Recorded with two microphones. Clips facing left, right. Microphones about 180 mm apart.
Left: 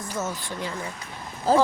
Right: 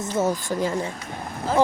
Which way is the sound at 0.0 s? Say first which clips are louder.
Right 7 dB; 25° right (ahead or behind).